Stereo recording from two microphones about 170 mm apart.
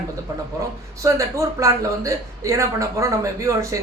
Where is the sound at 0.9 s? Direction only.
20° right (ahead or behind).